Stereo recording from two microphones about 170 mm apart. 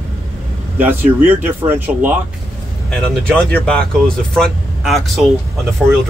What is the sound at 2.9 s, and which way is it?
Speech, 5° left (ahead or behind).